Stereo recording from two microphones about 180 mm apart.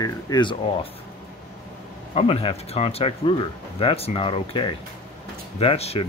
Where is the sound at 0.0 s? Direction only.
25° left (ahead or behind).